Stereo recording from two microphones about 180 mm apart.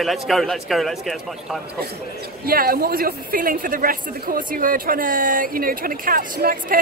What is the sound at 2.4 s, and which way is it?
Speech, 55° right (ahead or behind).